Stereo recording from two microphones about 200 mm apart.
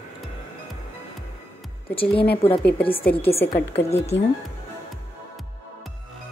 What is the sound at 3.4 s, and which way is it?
Speech, 55° left (ahead or behind).